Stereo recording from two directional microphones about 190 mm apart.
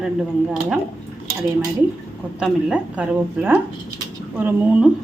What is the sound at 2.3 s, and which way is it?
A woman's voice, 5° right (ahead or behind).